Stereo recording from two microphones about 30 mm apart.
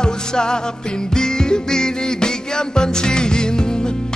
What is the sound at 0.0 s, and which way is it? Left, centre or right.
Music, left.